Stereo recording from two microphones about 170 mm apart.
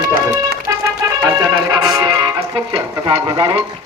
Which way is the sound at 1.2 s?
25° right (ahead or behind).